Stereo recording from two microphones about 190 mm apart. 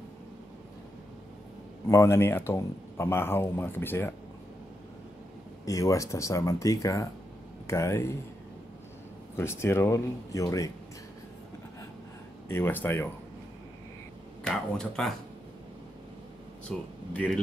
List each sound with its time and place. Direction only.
1.9 s speech: 15° left (ahead or behind)
5.7 s speech: 15° left (ahead or behind)
9.4 s speech: 15° left (ahead or behind)
12.4 s speech: 10° left (ahead or behind)
14.4 s speech: centre (ahead or behind)
16.6 s speech: 5° left (ahead or behind)